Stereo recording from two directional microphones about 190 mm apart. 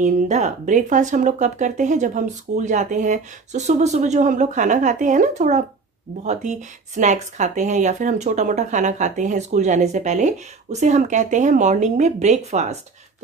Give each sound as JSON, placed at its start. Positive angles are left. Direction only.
{"t": 0.0, "sound": "speech", "side_deg": -40}